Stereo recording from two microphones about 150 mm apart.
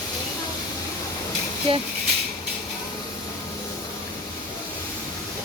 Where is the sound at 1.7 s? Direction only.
35° right (ahead or behind).